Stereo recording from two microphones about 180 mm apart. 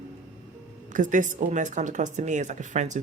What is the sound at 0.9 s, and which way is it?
Speech, 45° right (ahead or behind).